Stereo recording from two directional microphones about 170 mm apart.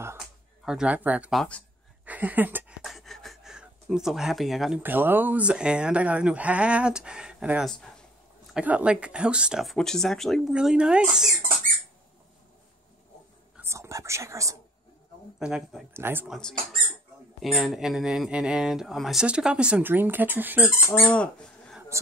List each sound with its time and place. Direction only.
0.7 s speech: 5° right (ahead or behind)
2.8 s speech: centre (ahead or behind)
13.6 s whispering: 15° right (ahead or behind)
15.3 s speech: 5° right (ahead or behind)
16.3 s speech: 5° left (ahead or behind)
21.1 s squawk: 5° left (ahead or behind)